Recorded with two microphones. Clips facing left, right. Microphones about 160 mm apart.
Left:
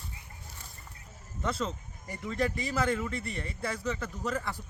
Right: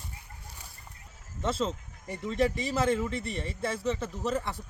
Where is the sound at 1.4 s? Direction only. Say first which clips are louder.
Right 3 dB; 25° right (ahead or behind).